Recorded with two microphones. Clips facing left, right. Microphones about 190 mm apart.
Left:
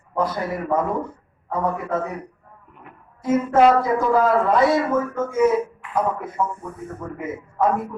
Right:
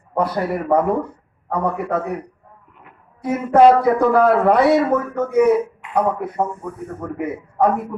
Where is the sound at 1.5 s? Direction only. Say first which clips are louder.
Right 2 dB; 65° right (ahead or behind).